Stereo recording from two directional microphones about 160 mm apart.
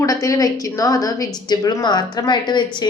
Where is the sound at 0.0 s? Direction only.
20° left (ahead or behind).